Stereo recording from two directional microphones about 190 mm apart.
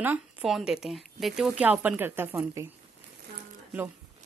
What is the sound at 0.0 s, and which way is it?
Speech, 5° right (ahead or behind).